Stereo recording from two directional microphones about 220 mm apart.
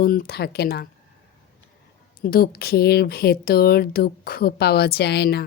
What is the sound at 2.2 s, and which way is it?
Speech, 45° left (ahead or behind).